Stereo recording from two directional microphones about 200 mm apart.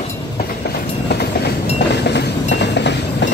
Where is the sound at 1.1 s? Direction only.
55° left (ahead or behind).